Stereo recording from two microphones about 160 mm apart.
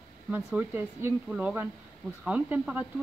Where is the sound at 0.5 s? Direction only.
10° right (ahead or behind).